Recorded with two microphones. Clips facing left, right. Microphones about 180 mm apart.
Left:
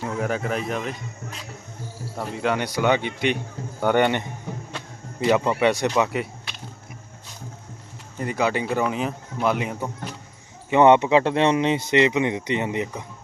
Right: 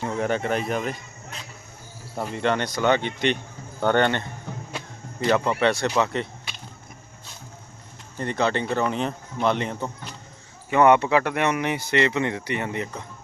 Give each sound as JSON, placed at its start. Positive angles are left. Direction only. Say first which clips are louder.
{"t": 0.0, "sound": "speech", "louder": "right 1 dB", "side_deg": 5}
{"t": 2.1, "sound": "speech", "louder": "even", "side_deg": 0}
{"t": 8.2, "sound": "speech", "louder": "even", "side_deg": 10}
{"t": 10.7, "sound": "speech", "louder": "left 2 dB", "side_deg": 20}